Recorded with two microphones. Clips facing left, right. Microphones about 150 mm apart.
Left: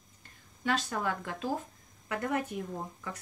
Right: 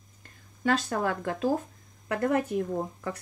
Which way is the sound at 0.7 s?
45° right (ahead or behind).